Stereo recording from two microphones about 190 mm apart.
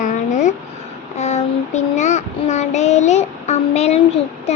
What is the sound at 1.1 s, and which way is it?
Child singing, 35° left (ahead or behind).